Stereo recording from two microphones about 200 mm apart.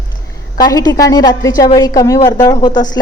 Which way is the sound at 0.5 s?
20° left (ahead or behind).